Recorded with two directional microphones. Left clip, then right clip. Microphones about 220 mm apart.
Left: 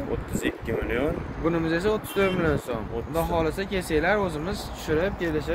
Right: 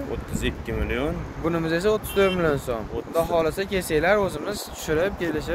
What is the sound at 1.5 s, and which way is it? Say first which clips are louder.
Speech: right 2 dB; 40° right (ahead or behind).